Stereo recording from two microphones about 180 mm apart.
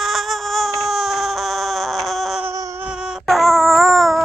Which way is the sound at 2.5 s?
15° right (ahead or behind).